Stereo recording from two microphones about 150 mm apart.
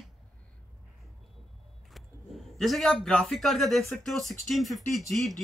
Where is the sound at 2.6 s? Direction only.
Centre (ahead or behind).